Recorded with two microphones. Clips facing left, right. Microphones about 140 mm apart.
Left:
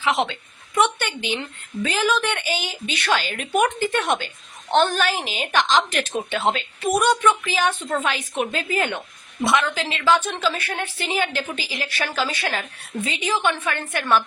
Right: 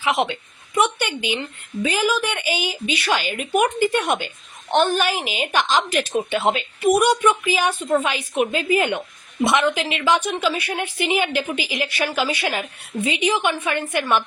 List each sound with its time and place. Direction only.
0.0 s a woman's voice: 10° right (ahead or behind)